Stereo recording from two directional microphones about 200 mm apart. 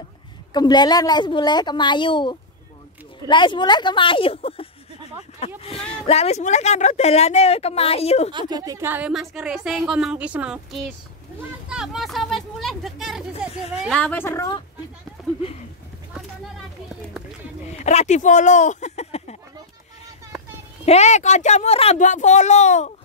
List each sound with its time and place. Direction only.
0.5 s a woman's voice: 20° left (ahead or behind)
8.3 s a woman's voice: 20° right (ahead or behind); by 14.6 s 15° left (ahead or behind)
17.8 s speech: 35° left (ahead or behind)
20.8 s speech: 35° left (ahead or behind)